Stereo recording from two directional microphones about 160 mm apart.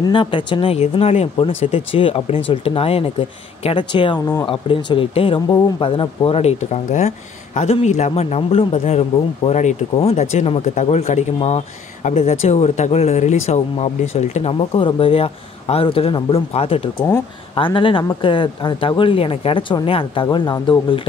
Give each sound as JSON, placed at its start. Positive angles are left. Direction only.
{"t": 0.0, "sound": "speech", "side_deg": 30}